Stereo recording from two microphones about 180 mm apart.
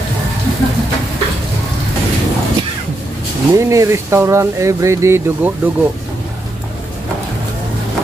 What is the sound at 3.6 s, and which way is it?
Speech, 15° right (ahead or behind).